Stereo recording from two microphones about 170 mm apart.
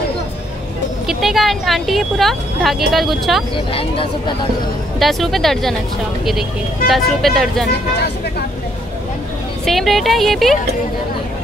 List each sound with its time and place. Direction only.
1.0 s speech: centre (ahead or behind)
3.5 s speech: 30° left (ahead or behind)
4.9 s speech: centre (ahead or behind)
6.9 s speech: centre (ahead or behind)
9.7 s speech: centre (ahead or behind)